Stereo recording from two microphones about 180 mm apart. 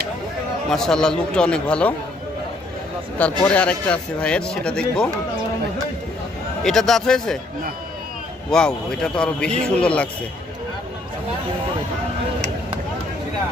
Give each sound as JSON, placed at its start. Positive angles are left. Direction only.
{"t": 0.7, "sound": "speech", "side_deg": 5}
{"t": 3.2, "sound": "speech", "side_deg": 5}
{"t": 6.6, "sound": "speech", "side_deg": 0}
{"t": 8.5, "sound": "speech", "side_deg": 5}